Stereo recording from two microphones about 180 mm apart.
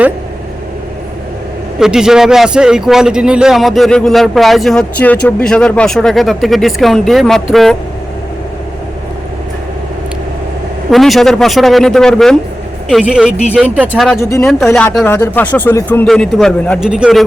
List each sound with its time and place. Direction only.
1.8 s a man's voice: 5° right (ahead or behind)
10.9 s a man's voice: centre (ahead or behind)
14.2 s speech: 15° left (ahead or behind)
14.4 s a man's voice: 5° left (ahead or behind)